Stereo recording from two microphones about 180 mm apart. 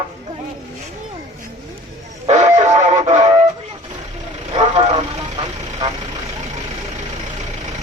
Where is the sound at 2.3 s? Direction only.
40° right (ahead or behind).